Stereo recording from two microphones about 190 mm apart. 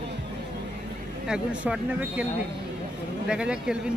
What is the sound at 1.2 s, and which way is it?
Speech, 5° right (ahead or behind).